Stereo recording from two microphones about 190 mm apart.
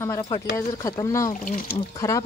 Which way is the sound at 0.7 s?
15° left (ahead or behind).